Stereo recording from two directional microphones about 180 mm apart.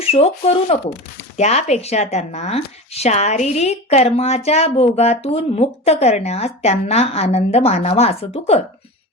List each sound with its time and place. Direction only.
0.0 s speech: 35° left (ahead or behind)